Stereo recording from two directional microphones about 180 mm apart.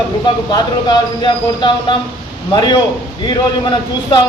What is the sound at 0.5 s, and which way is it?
Speech, 25° left (ahead or behind).